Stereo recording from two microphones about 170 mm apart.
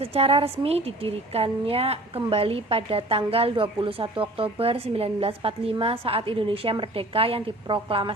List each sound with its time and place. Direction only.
0.0 s a woman's voice: 35° right (ahead or behind)